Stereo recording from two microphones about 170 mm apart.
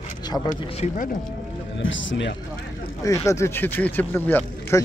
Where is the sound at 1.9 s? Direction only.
90° left.